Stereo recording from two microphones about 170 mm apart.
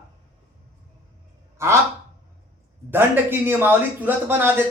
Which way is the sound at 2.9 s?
10° right (ahead or behind).